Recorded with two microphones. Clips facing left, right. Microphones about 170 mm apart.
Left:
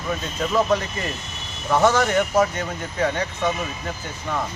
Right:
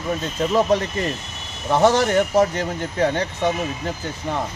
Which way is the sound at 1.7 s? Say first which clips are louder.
Right 2 dB; 35° right (ahead or behind).